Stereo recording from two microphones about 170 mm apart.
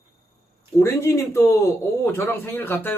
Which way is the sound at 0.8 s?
15° left (ahead or behind).